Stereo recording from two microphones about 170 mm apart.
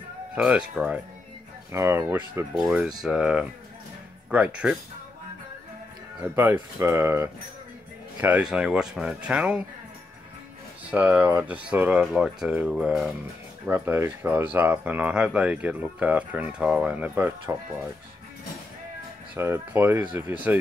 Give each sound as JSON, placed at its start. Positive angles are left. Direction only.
{"t": 0.4, "sound": "speech", "side_deg": -5}
{"t": 6.3, "sound": "speech", "side_deg": -10}
{"t": 10.9, "sound": "speech", "side_deg": -10}
{"t": 19.3, "sound": "speech", "side_deg": -10}